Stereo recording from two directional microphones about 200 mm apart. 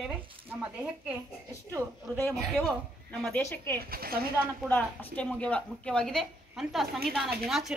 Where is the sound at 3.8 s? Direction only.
50° right (ahead or behind).